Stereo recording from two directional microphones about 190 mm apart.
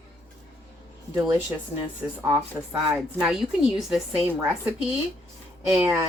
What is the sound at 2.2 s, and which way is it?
A woman's voice, 10° right (ahead or behind).